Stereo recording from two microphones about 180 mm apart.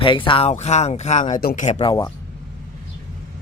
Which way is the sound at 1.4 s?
55° left (ahead or behind).